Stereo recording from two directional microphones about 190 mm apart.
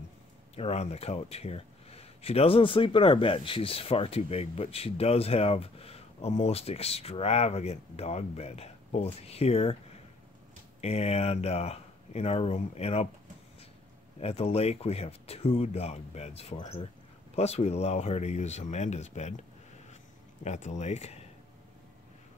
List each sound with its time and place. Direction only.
0.6 s speech: 35° left (ahead or behind)
10.8 s speech: 35° left (ahead or behind)
14.2 s speech: 30° left (ahead or behind)
20.4 s speech: 40° left (ahead or behind)